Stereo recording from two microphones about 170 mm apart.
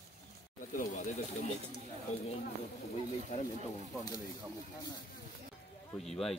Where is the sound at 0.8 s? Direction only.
50° left (ahead or behind).